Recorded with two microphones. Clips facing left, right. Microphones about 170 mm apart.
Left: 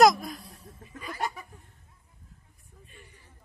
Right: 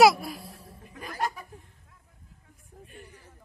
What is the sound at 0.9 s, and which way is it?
Goat, 40° right (ahead or behind).